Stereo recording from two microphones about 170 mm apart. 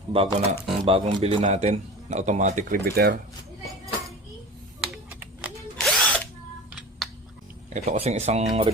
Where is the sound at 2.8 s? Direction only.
65° right (ahead or behind).